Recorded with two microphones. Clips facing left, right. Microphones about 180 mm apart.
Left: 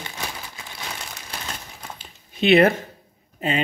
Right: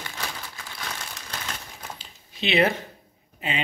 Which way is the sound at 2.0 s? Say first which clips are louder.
Left 11 dB; 50° left (ahead or behind).